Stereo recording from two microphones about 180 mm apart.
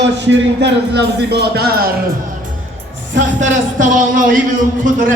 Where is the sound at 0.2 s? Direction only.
75° right (ahead or behind); by 1.9 s 60° right (ahead or behind).